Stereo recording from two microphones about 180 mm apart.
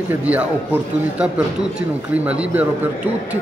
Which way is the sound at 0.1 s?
10° right (ahead or behind).